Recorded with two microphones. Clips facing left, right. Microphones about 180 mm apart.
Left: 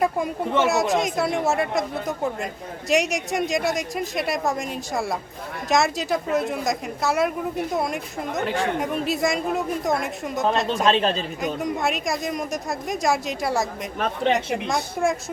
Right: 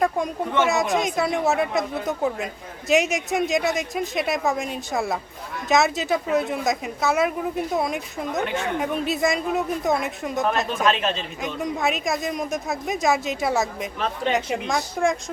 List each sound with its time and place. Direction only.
0.6 s a woman's voice: centre (ahead or behind)
10.8 s a woman's voice: 30° left (ahead or behind)
11.6 s a woman's voice: centre (ahead or behind)